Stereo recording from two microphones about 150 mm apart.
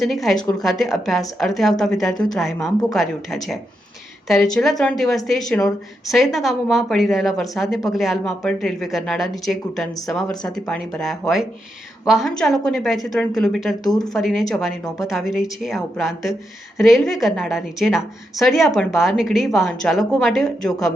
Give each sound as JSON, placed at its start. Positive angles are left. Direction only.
{"t": 0.0, "sound": "a woman's voice", "side_deg": 0}
{"t": 13.9, "sound": "speech", "side_deg": 25}
{"t": 14.2, "sound": "a woman's voice", "side_deg": 0}